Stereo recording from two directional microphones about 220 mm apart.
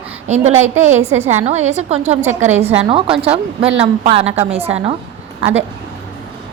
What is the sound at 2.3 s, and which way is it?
Speech, 10° right (ahead or behind).